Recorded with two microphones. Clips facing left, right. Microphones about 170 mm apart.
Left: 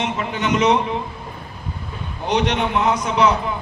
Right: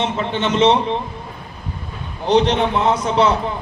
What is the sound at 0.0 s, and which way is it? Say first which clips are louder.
Speech: right 3 dB; 30° right (ahead or behind).